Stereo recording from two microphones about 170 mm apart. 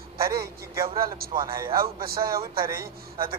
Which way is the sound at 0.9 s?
60° right (ahead or behind).